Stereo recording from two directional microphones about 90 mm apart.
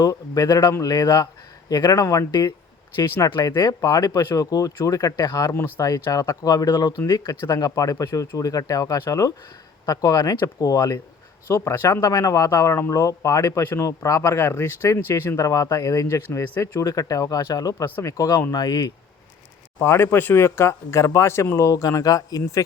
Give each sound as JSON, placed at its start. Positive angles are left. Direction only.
{"t": 0.0, "sound": "speech", "side_deg": 45}
{"t": 5.5, "sound": "speech", "side_deg": 25}
{"t": 5.8, "sound": "speech", "side_deg": 40}
{"t": 15.4, "sound": "speech", "side_deg": 40}
{"t": 18.5, "sound": "speech", "side_deg": 50}
{"t": 19.8, "sound": "speech", "side_deg": 25}